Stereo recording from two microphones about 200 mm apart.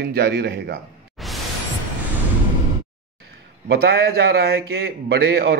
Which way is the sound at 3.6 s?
50° right (ahead or behind).